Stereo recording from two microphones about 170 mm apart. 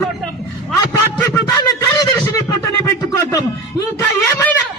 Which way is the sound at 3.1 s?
20° left (ahead or behind).